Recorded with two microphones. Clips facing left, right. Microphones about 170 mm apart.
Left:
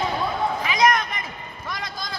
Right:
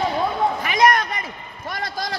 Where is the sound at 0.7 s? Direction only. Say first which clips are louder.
Right 2 dB; 45° right (ahead or behind).